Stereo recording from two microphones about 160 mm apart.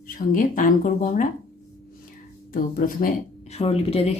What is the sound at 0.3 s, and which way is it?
Speech, 55° left (ahead or behind).